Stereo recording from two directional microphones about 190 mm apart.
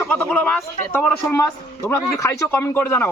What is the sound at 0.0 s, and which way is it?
Speech, 10° left (ahead or behind).